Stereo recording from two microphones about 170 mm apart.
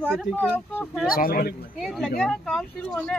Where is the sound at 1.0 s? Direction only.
60° left (ahead or behind).